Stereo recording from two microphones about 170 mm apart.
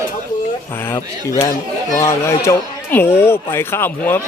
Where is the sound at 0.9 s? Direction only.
20° left (ahead or behind).